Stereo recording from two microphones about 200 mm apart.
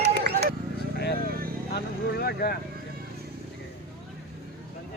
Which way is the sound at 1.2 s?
45° right (ahead or behind).